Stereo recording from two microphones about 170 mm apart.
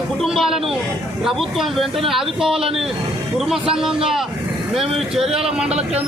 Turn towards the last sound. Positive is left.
turn(degrees=-5)  # may be behind; listen again after turning